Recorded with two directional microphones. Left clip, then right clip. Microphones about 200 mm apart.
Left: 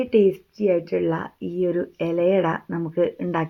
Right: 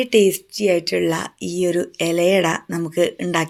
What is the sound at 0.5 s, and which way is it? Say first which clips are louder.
Speech: right 3 dB; 10° right (ahead or behind).